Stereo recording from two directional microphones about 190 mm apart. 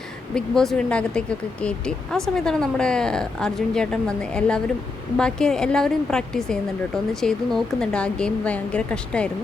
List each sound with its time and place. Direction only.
0.3 s speech: 5° left (ahead or behind)